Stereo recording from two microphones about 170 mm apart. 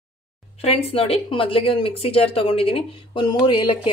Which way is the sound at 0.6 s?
35° left (ahead or behind).